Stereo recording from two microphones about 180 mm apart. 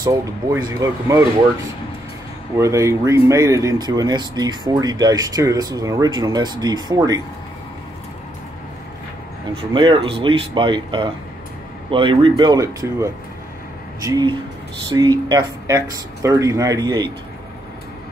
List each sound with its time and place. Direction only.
0.0 s speech: 20° right (ahead or behind)
2.5 s speech: 15° right (ahead or behind)
9.8 s speech: 30° right (ahead or behind)